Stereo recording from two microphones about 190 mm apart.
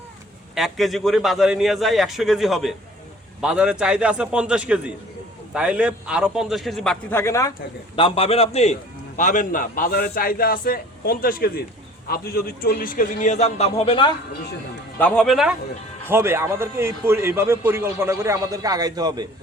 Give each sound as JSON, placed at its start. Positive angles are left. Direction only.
{"t": 0.5, "sound": "a man's voice", "side_deg": 0}
{"t": 7.9, "sound": "a man's voice", "side_deg": 30}
{"t": 14.9, "sound": "a man's voice", "side_deg": 5}
{"t": 16.0, "sound": "a man's voice", "side_deg": -10}